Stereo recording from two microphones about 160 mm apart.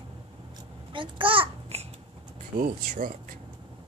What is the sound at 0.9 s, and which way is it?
Babbling, 30° right (ahead or behind).